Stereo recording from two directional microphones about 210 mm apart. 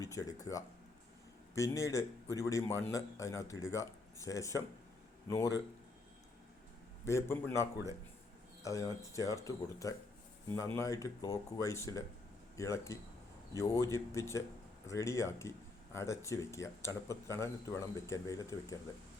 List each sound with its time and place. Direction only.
0.0 s speech: 15° left (ahead or behind)
7.0 s speech: 10° left (ahead or behind)